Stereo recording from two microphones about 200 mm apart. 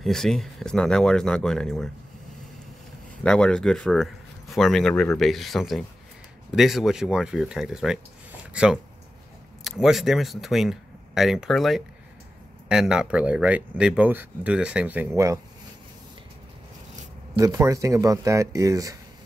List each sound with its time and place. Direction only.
0.0 s speech: centre (ahead or behind)
3.3 s speech: 5° left (ahead or behind)
9.6 s speech: centre (ahead or behind)
17.4 s speech: 15° right (ahead or behind)